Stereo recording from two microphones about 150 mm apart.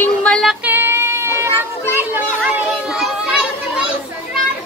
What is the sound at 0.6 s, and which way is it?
Child singing, 15° right (ahead or behind).